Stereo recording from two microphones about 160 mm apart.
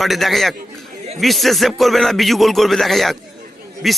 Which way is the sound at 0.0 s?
Centre (ahead or behind).